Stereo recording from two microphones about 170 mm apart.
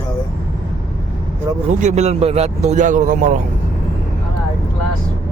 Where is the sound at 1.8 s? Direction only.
45° right (ahead or behind).